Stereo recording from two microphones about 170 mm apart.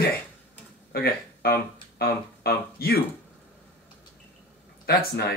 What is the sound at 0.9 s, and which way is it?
Speech, 65° left (ahead or behind).